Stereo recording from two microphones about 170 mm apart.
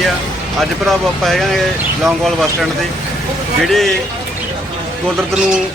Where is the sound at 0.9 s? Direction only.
Centre (ahead or behind).